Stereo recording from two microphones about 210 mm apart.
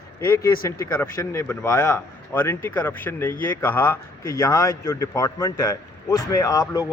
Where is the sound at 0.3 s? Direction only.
15° left (ahead or behind).